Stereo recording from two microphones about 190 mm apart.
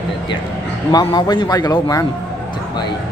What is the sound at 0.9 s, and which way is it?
A man's voice, 20° left (ahead or behind).